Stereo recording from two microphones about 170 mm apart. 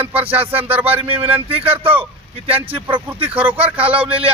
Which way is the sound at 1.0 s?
35° right (ahead or behind).